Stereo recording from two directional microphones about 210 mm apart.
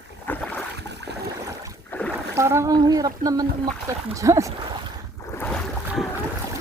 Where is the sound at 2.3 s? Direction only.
15° right (ahead or behind).